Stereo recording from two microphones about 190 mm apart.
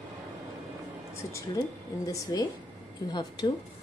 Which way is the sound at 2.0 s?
20° left (ahead or behind).